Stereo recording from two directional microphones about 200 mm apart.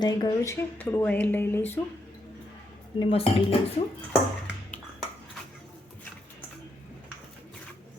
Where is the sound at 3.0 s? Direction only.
30° left (ahead or behind).